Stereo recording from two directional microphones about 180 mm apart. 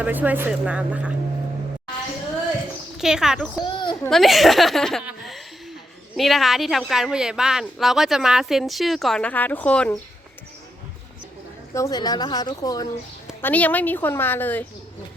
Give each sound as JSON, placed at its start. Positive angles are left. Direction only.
{"t": 0.0, "sound": "speech", "side_deg": -10}
{"t": 3.0, "sound": "a woman's voice", "side_deg": -5}
{"t": 3.6, "sound": "speech", "side_deg": 25}
{"t": 4.1, "sound": "a woman's voice", "side_deg": 0}
{"t": 11.7, "sound": "a woman's voice", "side_deg": 20}
{"t": 13.4, "sound": "a woman's voice", "side_deg": 10}